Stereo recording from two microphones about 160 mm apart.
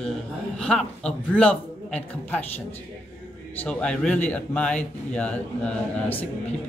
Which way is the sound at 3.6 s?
5° left (ahead or behind).